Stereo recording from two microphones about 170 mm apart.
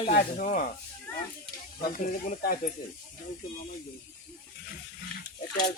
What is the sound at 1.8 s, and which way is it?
Speech, 55° left (ahead or behind).